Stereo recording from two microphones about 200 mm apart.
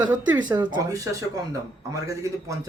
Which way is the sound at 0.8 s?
15° right (ahead or behind).